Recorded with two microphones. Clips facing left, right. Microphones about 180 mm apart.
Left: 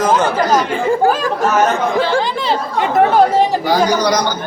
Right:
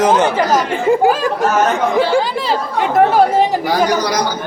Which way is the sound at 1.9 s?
15° right (ahead or behind).